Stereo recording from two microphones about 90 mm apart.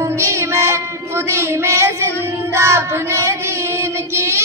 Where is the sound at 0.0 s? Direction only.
35° right (ahead or behind).